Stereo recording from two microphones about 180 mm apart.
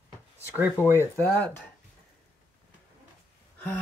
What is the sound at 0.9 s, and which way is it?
Speech, 10° left (ahead or behind).